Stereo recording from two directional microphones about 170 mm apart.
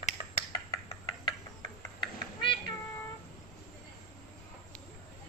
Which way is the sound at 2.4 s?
30° left (ahead or behind).